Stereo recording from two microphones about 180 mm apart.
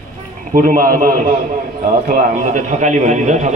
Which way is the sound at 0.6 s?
50° right (ahead or behind).